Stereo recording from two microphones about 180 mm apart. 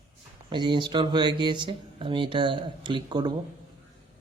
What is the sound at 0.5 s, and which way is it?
Speech, 25° right (ahead or behind).